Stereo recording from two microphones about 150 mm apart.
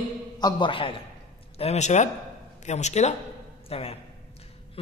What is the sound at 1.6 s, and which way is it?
A man's voice, 45° left (ahead or behind).